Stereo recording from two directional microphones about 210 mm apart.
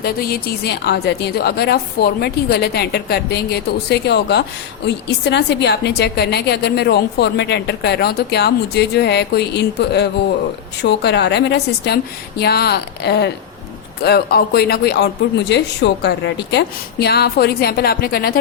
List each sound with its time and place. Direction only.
0.0 s a woman's voice: 45° left (ahead or behind)